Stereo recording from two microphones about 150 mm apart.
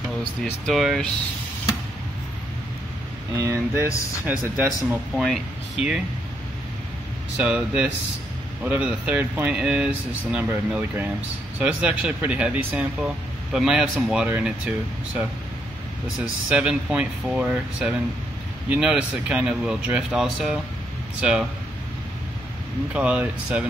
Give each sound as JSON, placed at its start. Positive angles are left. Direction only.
{"t": 0.4, "sound": "speech", "side_deg": 0}
{"t": 3.3, "sound": "speech", "side_deg": -20}
{"t": 4.8, "sound": "speech", "side_deg": 0}
{"t": 7.4, "sound": "speech", "side_deg": -10}
{"t": 16.4, "sound": "speech", "side_deg": -10}
{"t": 22.9, "sound": "speech", "side_deg": -10}